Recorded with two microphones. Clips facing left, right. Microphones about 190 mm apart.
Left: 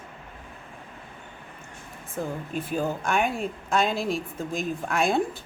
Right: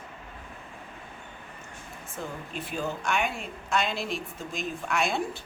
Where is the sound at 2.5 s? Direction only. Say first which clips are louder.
Left 4 dB; 45° left (ahead or behind).